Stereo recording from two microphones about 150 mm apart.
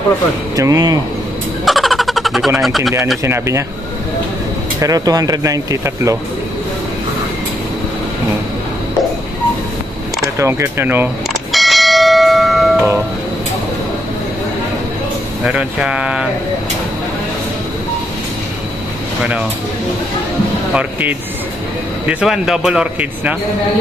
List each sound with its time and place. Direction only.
0.6 s speech: 25° right (ahead or behind)
1.7 s vehicle: centre (ahead or behind)
2.6 s speech: centre (ahead or behind)
3.3 s speech: 20° right (ahead or behind)
4.7 s speech: 25° right (ahead or behind)
10.4 s speech: 15° right (ahead or behind)
11.5 s bell: centre (ahead or behind)
15.4 s speech: 5° right (ahead or behind)
20.7 s speech: 10° right (ahead or behind)